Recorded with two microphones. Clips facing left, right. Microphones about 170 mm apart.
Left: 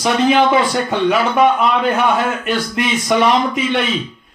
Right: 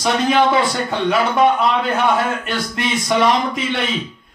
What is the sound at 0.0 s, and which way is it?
A man's voice, 15° left (ahead or behind).